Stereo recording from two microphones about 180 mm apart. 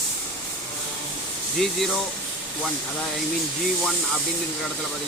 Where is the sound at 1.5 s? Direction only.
Centre (ahead or behind).